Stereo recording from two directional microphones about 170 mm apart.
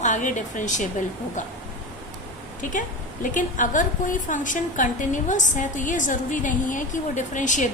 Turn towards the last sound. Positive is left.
turn(degrees=45)  # may be behind; listen again after turning